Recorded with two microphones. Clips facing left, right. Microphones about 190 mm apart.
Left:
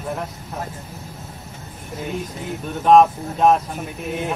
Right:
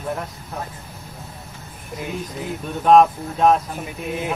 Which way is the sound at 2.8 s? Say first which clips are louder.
Even; centre (ahead or behind).